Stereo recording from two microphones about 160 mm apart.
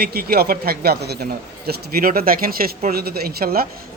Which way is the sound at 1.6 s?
70° right (ahead or behind).